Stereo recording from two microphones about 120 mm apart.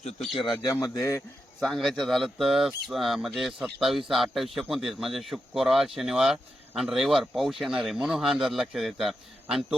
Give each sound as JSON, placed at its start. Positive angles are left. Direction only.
{"t": 0.2, "sound": "speech", "side_deg": 0}
{"t": 0.4, "sound": "speech", "side_deg": 35}
{"t": 1.5, "sound": "speech", "side_deg": 0}